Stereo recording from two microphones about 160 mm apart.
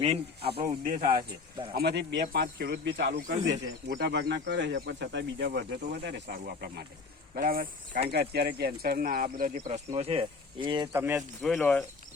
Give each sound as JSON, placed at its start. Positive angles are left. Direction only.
{"t": 0.6, "sound": "speech", "side_deg": -55}
{"t": 1.7, "sound": "speech", "side_deg": -85}
{"t": 7.3, "sound": "speech", "side_deg": -60}
{"t": 8.1, "sound": "speech", "side_deg": -85}
{"t": 10.9, "sound": "speech", "side_deg": -15}
{"t": 11.6, "sound": "speech", "side_deg": 15}